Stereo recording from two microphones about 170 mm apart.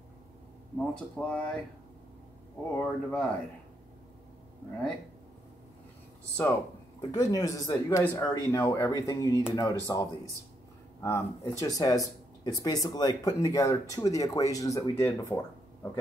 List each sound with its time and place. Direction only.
0.7 s speech: 5° left (ahead or behind)
2.7 s speech: 10° left (ahead or behind)
7.0 s speech: 20° left (ahead or behind)